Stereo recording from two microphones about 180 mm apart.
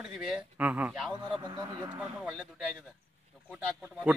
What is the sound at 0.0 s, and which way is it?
A man's voice, centre (ahead or behind).